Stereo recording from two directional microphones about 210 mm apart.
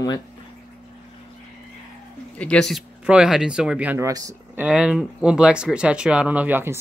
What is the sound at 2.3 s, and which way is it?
Speech, 5° left (ahead or behind).